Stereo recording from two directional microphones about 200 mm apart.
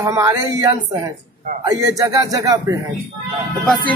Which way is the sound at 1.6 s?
15° right (ahead or behind).